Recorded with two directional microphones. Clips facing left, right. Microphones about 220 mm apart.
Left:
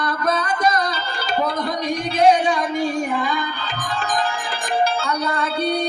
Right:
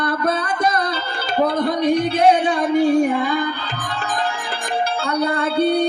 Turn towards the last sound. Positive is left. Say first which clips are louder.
# right 5 dB
turn(degrees=-60)  # may be behind; listen again after turning